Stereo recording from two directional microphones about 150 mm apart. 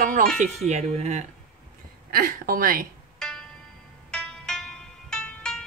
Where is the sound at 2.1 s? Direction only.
70° right (ahead or behind).